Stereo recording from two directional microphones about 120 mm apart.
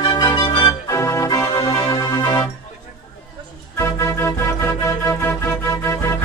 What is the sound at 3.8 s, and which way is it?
Organ, 20° left (ahead or behind).